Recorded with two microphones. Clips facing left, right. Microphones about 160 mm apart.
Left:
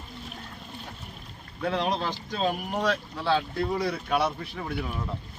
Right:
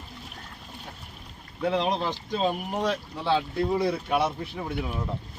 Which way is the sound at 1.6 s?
20° right (ahead or behind).